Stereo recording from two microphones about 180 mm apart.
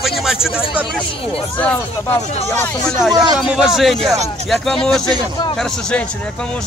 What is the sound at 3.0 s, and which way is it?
Speech, centre (ahead or behind).